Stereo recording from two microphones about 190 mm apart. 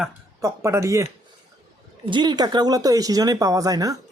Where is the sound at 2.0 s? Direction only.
25° right (ahead or behind).